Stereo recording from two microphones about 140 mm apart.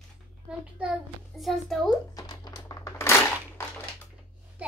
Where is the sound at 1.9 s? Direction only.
30° left (ahead or behind).